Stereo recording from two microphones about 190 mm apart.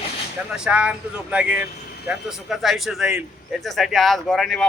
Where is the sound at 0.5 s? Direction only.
5° right (ahead or behind).